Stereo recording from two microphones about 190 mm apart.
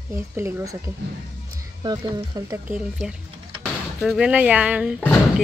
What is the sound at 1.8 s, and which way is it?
Speech, 20° right (ahead or behind).